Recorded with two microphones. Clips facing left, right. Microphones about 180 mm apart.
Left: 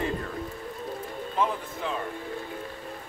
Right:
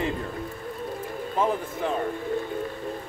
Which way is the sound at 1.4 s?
40° right (ahead or behind).